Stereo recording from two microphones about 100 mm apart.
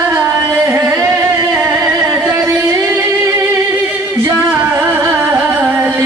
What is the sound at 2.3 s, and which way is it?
Singing, 35° right (ahead or behind).